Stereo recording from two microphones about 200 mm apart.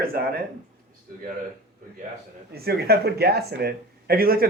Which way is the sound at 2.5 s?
50° right (ahead or behind).